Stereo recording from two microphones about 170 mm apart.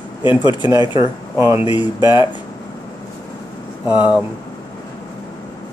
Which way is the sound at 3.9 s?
10° right (ahead or behind).